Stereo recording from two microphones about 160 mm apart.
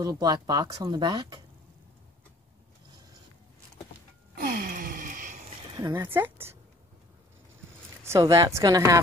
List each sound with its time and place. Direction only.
0.0 s speech: 25° right (ahead or behind)
4.4 s a sound: 65° right (ahead or behind)
5.8 s a woman's voice: 20° right (ahead or behind)
8.0 s speech: 20° right (ahead or behind)